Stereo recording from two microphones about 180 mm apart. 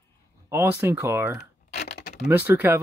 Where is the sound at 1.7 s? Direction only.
60° left (ahead or behind).